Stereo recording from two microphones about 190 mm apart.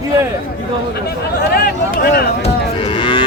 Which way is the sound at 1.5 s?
50° left (ahead or behind).